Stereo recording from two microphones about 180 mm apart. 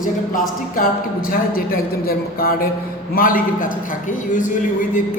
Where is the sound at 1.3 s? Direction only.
55° left (ahead or behind).